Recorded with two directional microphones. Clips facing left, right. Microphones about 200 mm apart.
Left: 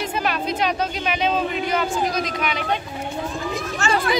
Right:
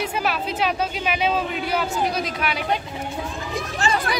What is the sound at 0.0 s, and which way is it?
Speech, 5° right (ahead or behind).